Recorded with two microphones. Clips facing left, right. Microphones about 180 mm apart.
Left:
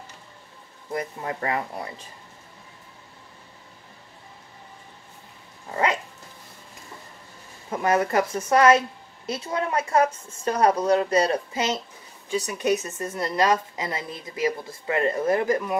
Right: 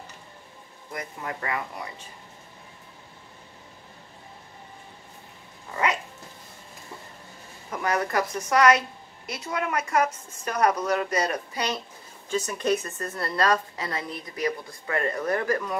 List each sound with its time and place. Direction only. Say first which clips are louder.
0.9 s speech: left 5 dB; 30° left (ahead or behind)
7.7 s a woman's voice: left 4 dB; 25° left (ahead or behind)